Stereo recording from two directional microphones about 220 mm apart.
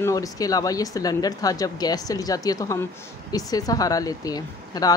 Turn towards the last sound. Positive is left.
turn(degrees=15)  # may be behind; listen again after turning